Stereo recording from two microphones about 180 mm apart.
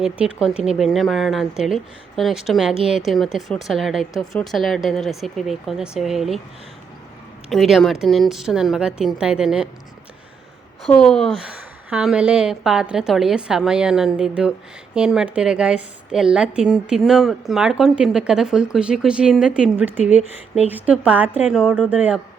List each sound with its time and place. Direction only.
0.0 s a woman's voice: 5° right (ahead or behind)
7.5 s a woman's voice: centre (ahead or behind)
10.8 s a woman's voice: 5° left (ahead or behind)